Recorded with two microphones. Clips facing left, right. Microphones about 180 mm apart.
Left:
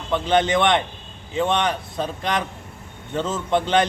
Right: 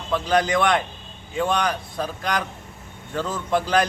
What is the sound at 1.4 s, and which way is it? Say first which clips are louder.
Speech: left 1 dB; centre (ahead or behind).